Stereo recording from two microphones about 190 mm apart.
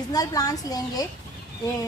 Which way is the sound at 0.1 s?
20° left (ahead or behind).